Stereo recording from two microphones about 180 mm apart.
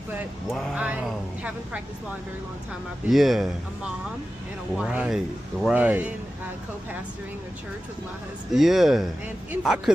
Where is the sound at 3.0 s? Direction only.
Centre (ahead or behind).